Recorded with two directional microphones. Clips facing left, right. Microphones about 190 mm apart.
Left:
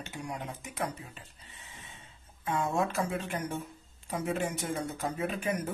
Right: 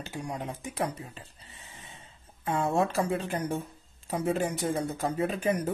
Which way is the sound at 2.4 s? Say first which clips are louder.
Right 3 dB; 35° right (ahead or behind).